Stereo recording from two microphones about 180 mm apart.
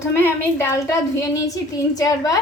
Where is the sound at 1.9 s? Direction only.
20° left (ahead or behind).